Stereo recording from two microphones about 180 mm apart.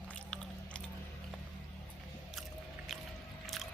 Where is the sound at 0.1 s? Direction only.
5° left (ahead or behind).